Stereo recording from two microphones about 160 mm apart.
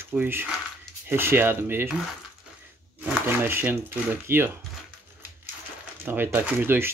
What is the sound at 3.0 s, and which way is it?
Speech, 10° right (ahead or behind).